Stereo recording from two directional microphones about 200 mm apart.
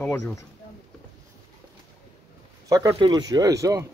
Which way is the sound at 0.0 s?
10° left (ahead or behind).